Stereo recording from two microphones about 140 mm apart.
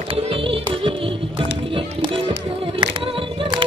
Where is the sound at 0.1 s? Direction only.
40° right (ahead or behind).